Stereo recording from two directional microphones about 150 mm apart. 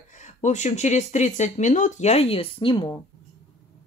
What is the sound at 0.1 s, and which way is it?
Speech, 55° left (ahead or behind).